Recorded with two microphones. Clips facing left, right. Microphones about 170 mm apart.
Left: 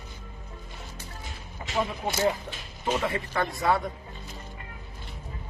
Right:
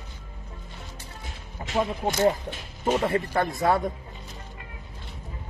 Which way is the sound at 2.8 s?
40° right (ahead or behind).